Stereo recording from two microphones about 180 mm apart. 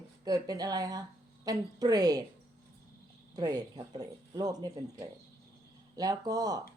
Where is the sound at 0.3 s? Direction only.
20° right (ahead or behind).